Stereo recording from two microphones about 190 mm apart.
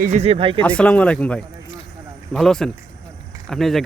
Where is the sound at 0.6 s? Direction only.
5° left (ahead or behind).